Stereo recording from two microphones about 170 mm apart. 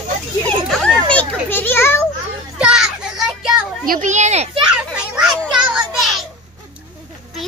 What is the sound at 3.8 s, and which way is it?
Speech, 45° right (ahead or behind).